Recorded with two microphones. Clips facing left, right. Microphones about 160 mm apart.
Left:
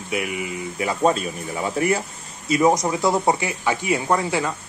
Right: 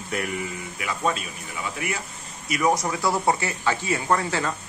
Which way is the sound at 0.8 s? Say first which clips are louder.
Left 7 dB; 40° left (ahead or behind).